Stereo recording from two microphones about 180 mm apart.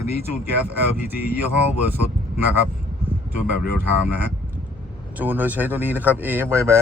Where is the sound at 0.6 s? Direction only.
10° right (ahead or behind).